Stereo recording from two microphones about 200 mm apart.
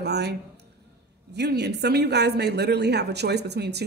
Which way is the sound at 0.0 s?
55° right (ahead or behind).